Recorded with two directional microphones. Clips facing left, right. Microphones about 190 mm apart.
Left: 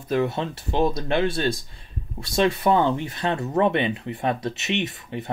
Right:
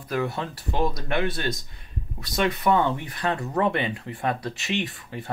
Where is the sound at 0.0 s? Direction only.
25° left (ahead or behind).